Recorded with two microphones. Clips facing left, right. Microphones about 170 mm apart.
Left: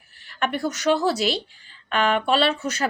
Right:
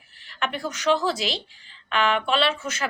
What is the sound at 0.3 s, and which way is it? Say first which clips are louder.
Speech: left 4 dB; 45° left (ahead or behind).